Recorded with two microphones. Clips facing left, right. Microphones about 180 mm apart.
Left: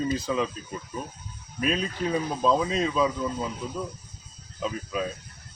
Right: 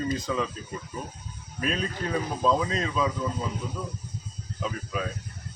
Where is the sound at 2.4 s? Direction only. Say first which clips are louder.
Left 2 dB; 10° left (ahead or behind).